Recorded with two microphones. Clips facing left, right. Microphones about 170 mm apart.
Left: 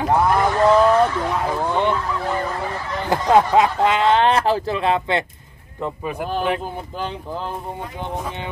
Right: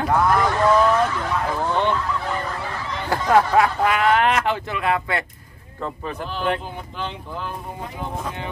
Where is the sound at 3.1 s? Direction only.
20° left (ahead or behind).